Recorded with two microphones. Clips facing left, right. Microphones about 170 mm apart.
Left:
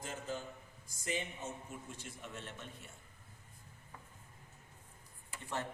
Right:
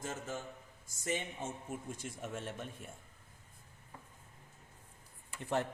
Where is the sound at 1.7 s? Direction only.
50° right (ahead or behind).